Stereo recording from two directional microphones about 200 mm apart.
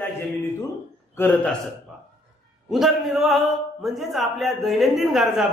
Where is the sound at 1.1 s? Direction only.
10° left (ahead or behind).